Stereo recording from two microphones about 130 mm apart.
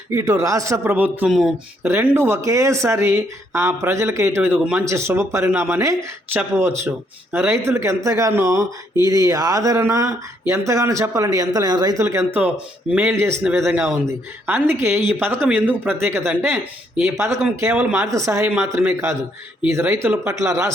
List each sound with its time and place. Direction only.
0.1 s speech: 25° right (ahead or behind)
1.3 s speech: 5° right (ahead or behind)
1.8 s speech: 15° right (ahead or behind)